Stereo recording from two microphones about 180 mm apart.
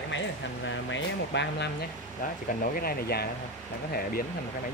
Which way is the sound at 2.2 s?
50° left (ahead or behind).